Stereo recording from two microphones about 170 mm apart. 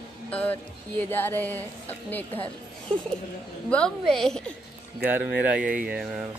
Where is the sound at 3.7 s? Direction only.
5° left (ahead or behind).